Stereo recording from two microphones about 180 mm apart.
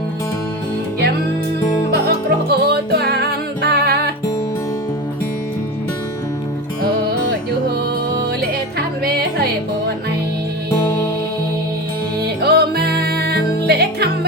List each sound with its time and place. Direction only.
2.0 s music: 60° right (ahead or behind)
9.0 s music: 60° right (ahead or behind)
10.7 s music: 15° left (ahead or behind)
12.2 s music: 65° right (ahead or behind)